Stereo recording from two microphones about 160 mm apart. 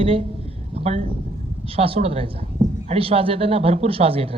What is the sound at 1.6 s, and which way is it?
A man's voice, 35° right (ahead or behind).